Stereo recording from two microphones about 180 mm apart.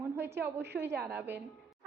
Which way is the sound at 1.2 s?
10° right (ahead or behind).